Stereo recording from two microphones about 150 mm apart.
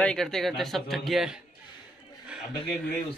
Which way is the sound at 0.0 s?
5° left (ahead or behind).